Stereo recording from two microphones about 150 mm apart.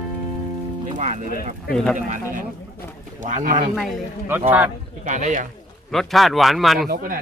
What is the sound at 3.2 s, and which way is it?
Speech, 60° right (ahead or behind).